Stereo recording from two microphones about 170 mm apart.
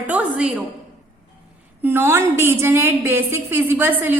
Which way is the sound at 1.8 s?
15° right (ahead or behind).